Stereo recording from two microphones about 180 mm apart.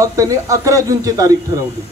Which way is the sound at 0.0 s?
15° right (ahead or behind).